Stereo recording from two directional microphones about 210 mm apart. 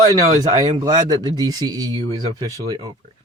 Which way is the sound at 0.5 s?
15° right (ahead or behind).